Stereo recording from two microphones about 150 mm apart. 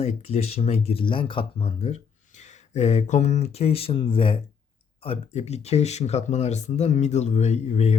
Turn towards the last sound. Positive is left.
turn(degrees=45)  # may be behind; listen again after turning